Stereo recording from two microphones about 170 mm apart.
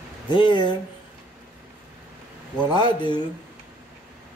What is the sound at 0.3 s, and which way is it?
Speech, 25° left (ahead or behind).